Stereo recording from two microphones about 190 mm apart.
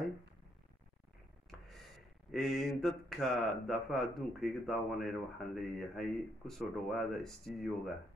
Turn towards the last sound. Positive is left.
turn(degrees=0)  # may be behind; listen again after turning